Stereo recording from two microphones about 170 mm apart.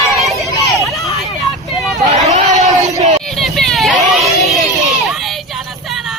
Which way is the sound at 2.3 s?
45° right (ahead or behind).